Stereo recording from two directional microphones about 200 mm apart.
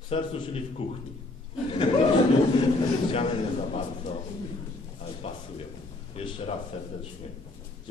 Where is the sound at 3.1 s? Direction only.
30° left (ahead or behind).